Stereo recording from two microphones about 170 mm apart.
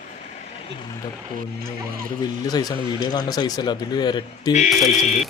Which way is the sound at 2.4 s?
20° left (ahead or behind).